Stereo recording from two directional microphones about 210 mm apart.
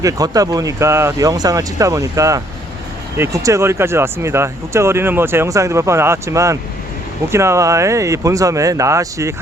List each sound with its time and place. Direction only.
0.0 s speech: 15° right (ahead or behind)